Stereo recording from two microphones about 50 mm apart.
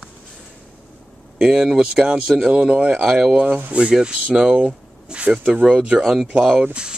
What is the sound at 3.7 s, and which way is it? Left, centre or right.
Speech, centre.